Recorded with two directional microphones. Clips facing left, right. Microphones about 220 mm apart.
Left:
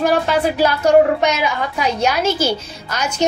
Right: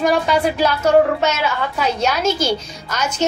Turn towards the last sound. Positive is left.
turn(degrees=10)  # may be behind; listen again after turning